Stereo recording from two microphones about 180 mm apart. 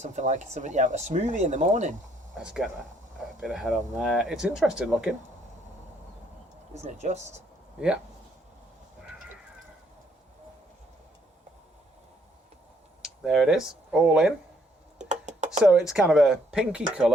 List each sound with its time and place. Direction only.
0.0 s speech: 40° right (ahead or behind)
2.3 s speech: 5° right (ahead or behind)
6.7 s speech: 40° right (ahead or behind)
13.0 s speech: centre (ahead or behind)
14.9 s a sound: 40° right (ahead or behind)
15.6 s speech: 5° right (ahead or behind)